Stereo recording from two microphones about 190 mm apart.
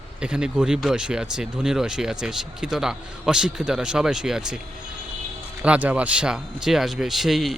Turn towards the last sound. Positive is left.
turn(degrees=0)  # may be behind; listen again after turning